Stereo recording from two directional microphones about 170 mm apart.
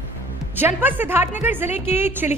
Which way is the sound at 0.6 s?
10° right (ahead or behind).